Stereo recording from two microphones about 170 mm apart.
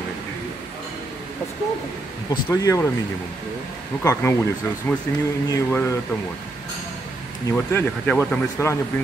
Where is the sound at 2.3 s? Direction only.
20° left (ahead or behind).